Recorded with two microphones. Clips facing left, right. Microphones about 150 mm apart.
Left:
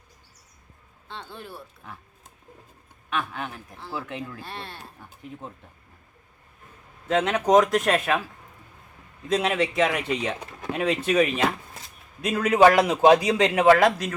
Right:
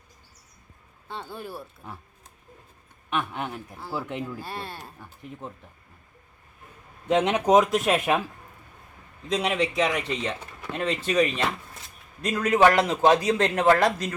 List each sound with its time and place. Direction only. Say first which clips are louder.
1.0 s speech: right 3 dB; 10° right (ahead or behind)
3.1 s speech: right 1 dB; 20° right (ahead or behind)
3.8 s speech: right 1 dB; 10° right (ahead or behind)
7.1 s speech: right 1 dB; 20° right (ahead or behind)
7.4 s speech: left 2 dB; 5° right (ahead or behind)
9.3 s a man's voice: left 2 dB; centre (ahead or behind)